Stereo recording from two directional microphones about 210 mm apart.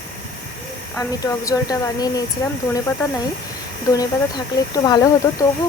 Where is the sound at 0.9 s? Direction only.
15° left (ahead or behind).